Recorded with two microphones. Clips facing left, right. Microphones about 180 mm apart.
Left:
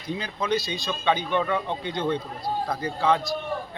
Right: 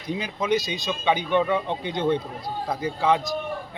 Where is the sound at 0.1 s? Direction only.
15° right (ahead or behind).